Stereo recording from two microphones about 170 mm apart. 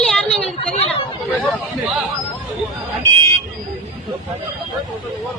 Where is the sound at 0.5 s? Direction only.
35° left (ahead or behind).